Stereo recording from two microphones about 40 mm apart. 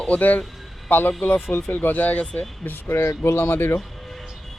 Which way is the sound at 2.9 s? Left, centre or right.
Left.